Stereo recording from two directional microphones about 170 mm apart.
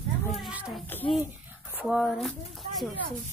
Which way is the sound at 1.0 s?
25° left (ahead or behind).